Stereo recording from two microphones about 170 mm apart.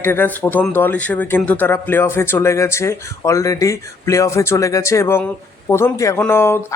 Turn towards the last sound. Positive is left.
turn(degrees=15)  # may be behind; listen again after turning